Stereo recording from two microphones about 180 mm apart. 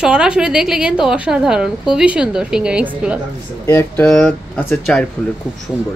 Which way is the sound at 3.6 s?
15° left (ahead or behind).